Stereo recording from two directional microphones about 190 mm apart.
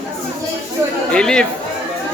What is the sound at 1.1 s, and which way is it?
Chatter, 5° left (ahead or behind).